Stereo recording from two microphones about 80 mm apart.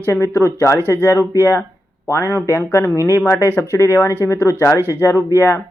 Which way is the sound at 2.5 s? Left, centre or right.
Left.